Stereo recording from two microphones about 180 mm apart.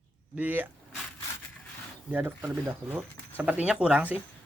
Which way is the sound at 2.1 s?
10° right (ahead or behind).